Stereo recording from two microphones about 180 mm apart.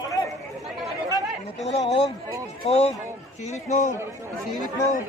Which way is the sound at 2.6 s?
35° left (ahead or behind).